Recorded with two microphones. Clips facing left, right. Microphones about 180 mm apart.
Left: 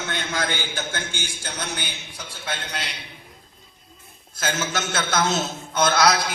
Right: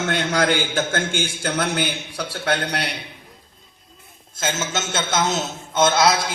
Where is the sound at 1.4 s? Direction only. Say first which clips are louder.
Right 10 dB; 55° right (ahead or behind).